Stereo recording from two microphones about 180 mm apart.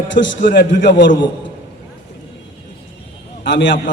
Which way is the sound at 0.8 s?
75° left (ahead or behind).